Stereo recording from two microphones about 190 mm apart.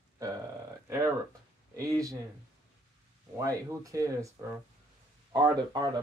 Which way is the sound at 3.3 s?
15° right (ahead or behind).